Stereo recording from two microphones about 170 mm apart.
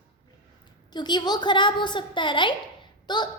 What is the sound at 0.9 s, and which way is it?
A woman's voice, 25° left (ahead or behind).